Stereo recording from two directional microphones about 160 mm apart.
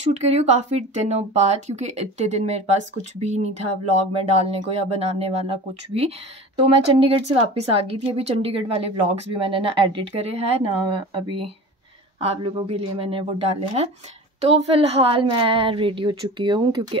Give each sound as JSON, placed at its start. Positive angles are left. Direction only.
{"t": 0.1, "sound": "a woman's voice", "side_deg": -40}